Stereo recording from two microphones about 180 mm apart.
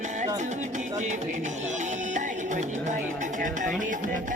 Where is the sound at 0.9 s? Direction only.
40° right (ahead or behind).